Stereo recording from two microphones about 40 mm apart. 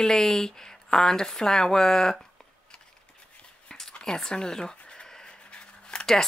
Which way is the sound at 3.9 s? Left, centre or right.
Centre.